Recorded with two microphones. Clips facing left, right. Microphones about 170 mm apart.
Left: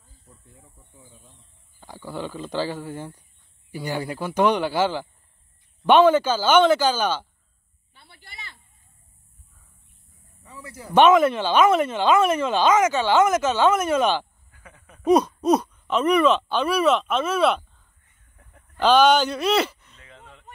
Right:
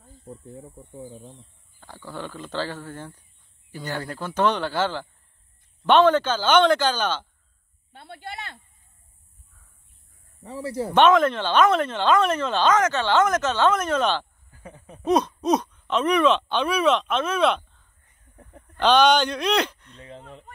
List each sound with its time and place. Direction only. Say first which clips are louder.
0.0 s snake: right 14 dB; 55° right (ahead or behind)
0.5 s speech: right 13 dB; 35° right (ahead or behind)
1.8 s speech: left 3 dB; 10° left (ahead or behind)
7.9 s speech: right 12 dB; 60° right (ahead or behind)
10.4 s speech: right 13 dB; 35° right (ahead or behind)
10.9 s speech: left 2 dB; 10° left (ahead or behind)
14.5 s a sound: right 7 dB; 30° right (ahead or behind)
15.0 s speech: left 3 dB; 10° left (ahead or behind)
18.3 s a sound: right 8 dB; 35° right (ahead or behind)
18.8 s speech: left 1 dB; 5° left (ahead or behind)
20.0 s speech: right 8 dB; 35° right (ahead or behind)